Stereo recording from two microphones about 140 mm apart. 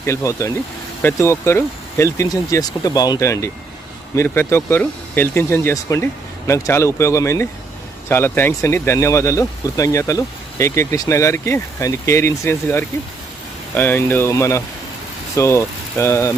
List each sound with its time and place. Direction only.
0.0 s speech: 20° left (ahead or behind)